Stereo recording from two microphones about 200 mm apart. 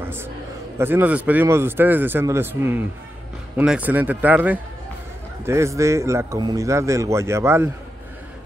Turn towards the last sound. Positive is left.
turn(degrees=-10)  # may be behind; listen again after turning